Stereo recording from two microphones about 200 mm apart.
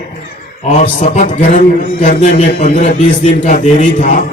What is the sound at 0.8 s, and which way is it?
Music, 35° left (ahead or behind).